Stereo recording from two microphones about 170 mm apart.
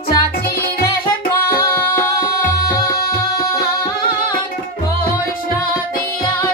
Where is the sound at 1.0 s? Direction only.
60° left (ahead or behind).